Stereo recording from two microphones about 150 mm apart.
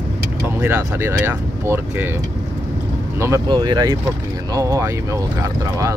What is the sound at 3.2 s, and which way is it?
Speech, 20° right (ahead or behind).